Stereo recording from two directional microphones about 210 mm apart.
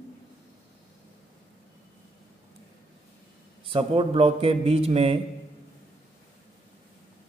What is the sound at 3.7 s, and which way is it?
Speech, 25° right (ahead or behind).